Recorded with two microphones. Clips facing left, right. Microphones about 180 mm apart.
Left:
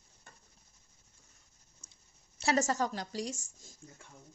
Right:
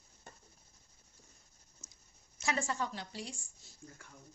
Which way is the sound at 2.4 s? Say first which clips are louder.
Left 6 dB; 40° left (ahead or behind).